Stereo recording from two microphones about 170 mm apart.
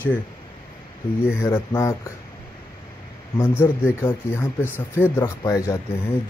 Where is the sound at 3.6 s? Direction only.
15° left (ahead or behind).